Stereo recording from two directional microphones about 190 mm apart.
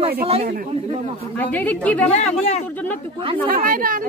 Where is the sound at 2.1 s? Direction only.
35° left (ahead or behind).